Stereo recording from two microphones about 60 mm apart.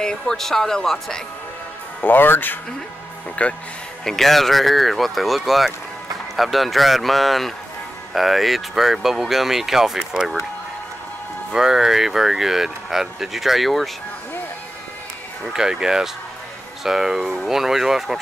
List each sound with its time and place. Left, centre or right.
0.0 s speech: centre
2.0 s speech: left
3.4 s speech: left
4.0 s speech: centre
11.5 s speech: centre
15.5 s speech: centre